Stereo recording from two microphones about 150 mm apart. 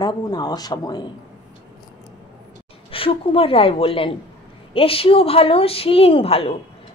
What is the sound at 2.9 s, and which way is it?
A woman's voice, 40° left (ahead or behind).